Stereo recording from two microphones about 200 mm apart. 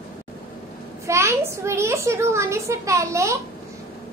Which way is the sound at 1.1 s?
15° right (ahead or behind).